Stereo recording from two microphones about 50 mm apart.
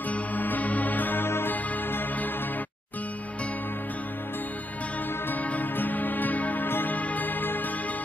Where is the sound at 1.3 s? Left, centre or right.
Left.